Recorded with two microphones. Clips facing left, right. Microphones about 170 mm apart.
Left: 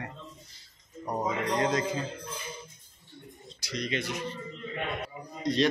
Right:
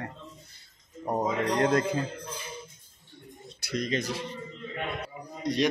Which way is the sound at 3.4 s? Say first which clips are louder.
Right 4 dB; 50° right (ahead or behind).